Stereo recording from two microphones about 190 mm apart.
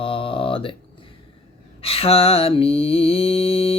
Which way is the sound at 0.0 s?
30° left (ahead or behind).